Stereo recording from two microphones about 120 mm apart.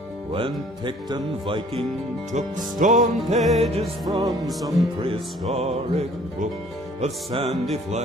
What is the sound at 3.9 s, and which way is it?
Music, centre (ahead or behind).